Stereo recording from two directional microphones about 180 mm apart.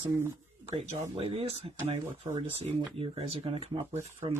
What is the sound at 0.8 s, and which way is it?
Speech, 35° right (ahead or behind).